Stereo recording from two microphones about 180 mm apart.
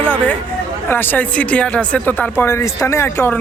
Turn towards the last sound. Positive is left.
turn(degrees=15)  # may be behind; listen again after turning